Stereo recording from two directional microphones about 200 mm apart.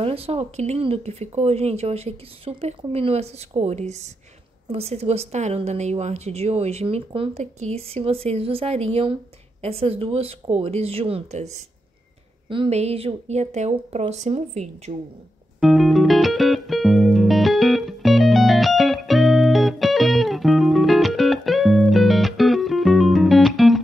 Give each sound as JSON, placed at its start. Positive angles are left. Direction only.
{"t": 0.0, "sound": "speech", "side_deg": -30}
{"t": 12.4, "sound": "speech", "side_deg": -30}
{"t": 15.6, "sound": "music", "side_deg": 0}